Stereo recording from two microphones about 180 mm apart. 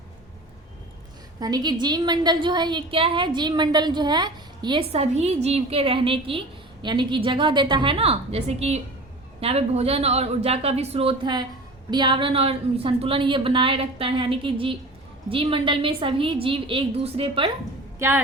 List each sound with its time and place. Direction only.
1.4 s a woman's voice: 20° right (ahead or behind)